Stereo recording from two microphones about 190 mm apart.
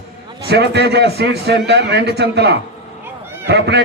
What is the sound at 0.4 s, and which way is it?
A man's voice, 60° right (ahead or behind).